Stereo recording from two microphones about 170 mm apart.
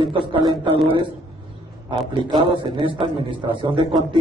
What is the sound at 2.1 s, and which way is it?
A man's voice, 25° right (ahead or behind).